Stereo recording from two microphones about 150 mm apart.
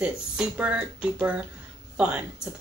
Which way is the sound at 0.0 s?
10° right (ahead or behind).